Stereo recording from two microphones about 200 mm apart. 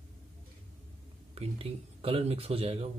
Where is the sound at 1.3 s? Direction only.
30° right (ahead or behind).